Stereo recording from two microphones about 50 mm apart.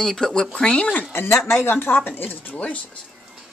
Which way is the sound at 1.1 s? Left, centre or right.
Left.